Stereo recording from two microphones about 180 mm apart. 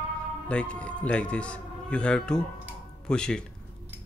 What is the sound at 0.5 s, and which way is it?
Speech, 5° left (ahead or behind).